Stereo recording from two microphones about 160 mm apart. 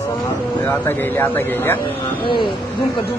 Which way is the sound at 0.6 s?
15° left (ahead or behind).